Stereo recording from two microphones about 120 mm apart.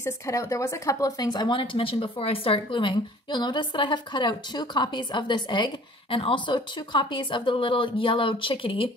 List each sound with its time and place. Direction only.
0.0 s speech: 25° left (ahead or behind); by 8.9 s 50° left (ahead or behind)